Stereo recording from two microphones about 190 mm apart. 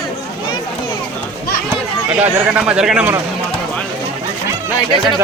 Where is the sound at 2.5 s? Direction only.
5° right (ahead or behind).